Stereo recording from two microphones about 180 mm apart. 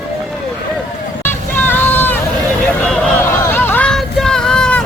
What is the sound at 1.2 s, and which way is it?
Music, 10° left (ahead or behind).